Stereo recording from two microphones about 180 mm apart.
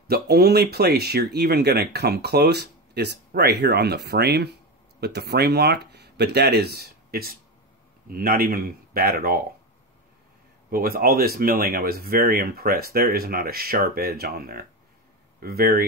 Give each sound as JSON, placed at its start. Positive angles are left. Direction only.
{"t": 0.1, "sound": "speech", "side_deg": -60}
{"t": 10.7, "sound": "speech", "side_deg": -55}